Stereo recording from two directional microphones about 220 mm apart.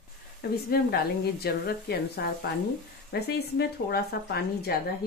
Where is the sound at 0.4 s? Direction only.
45° left (ahead or behind).